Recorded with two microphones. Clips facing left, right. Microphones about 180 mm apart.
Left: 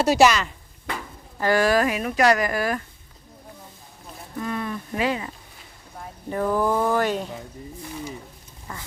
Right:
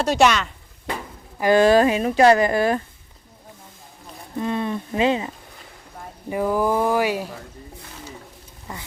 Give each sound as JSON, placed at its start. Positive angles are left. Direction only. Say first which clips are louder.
{"t": 0.0, "sound": "speech", "louder": "left 1 dB", "side_deg": 5}
{"t": 1.4, "sound": "a woman's voice", "louder": "right 5 dB", "side_deg": -20}
{"t": 4.4, "sound": "a woman's voice", "louder": "right 4 dB", "side_deg": -25}
{"t": 6.3, "sound": "speech", "louder": "right 2 dB", "side_deg": -10}
{"t": 8.7, "sound": "speech", "louder": "right 2 dB", "side_deg": -20}